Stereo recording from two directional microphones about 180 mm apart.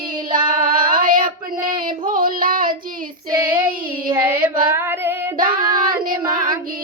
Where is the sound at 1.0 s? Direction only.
50° right (ahead or behind).